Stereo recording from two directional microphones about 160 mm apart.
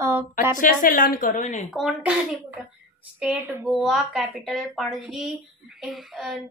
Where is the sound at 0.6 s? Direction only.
60° left (ahead or behind).